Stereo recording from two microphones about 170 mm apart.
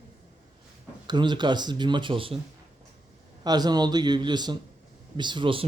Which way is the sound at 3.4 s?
25° right (ahead or behind).